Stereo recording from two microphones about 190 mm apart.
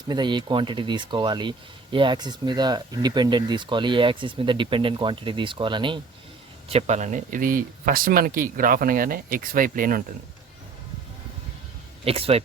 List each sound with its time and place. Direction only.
0.1 s speech: 25° right (ahead or behind); by 10.0 s 45° right (ahead or behind)
12.0 s speech: 30° right (ahead or behind)